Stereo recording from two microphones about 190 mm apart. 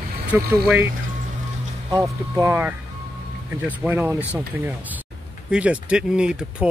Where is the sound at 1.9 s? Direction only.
15° right (ahead or behind).